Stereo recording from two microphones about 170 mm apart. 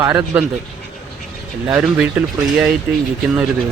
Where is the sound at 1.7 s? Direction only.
5° right (ahead or behind).